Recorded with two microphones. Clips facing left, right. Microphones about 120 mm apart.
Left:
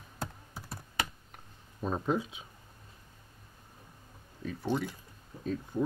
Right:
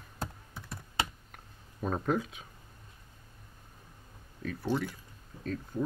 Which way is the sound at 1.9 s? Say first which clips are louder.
Even; 5° left (ahead or behind).